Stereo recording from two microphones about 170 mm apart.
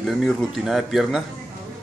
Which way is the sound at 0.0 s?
Centre (ahead or behind).